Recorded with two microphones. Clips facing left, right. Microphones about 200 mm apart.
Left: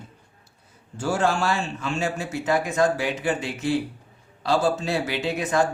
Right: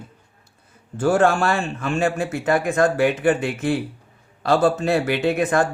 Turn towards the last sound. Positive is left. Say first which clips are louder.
# right 4 dB
turn(degrees=-55)  # may be behind; listen again after turning